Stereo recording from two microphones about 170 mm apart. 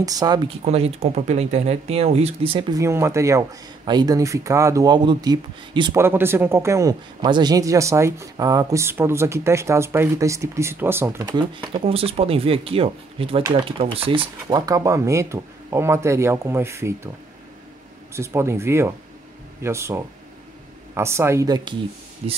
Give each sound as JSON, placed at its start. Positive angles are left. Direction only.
{"t": 0.0, "sound": "speech", "side_deg": -20}
{"t": 0.7, "sound": "speech", "side_deg": -40}
{"t": 2.8, "sound": "speech", "side_deg": -15}
{"t": 5.9, "sound": "a man's voice", "side_deg": -15}
{"t": 18.1, "sound": "a man's voice", "side_deg": -15}
{"t": 22.2, "sound": "speech", "side_deg": -40}